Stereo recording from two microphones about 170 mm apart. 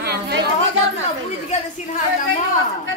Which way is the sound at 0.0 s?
75° right (ahead or behind).